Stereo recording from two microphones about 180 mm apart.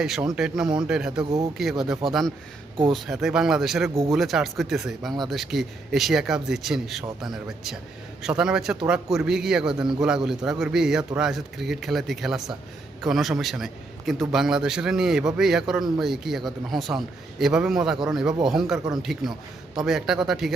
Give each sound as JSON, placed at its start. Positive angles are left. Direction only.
{"t": 0.0, "sound": "speech", "side_deg": -5}
{"t": 1.2, "sound": "speech", "side_deg": -20}
{"t": 2.0, "sound": "speech", "side_deg": 0}